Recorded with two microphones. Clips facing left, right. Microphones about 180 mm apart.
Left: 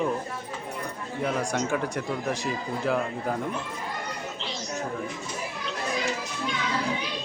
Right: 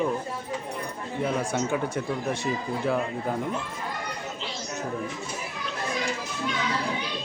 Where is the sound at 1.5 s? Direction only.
Centre (ahead or behind).